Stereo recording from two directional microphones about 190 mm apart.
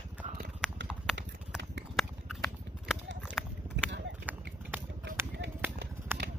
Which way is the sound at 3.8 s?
70° right (ahead or behind).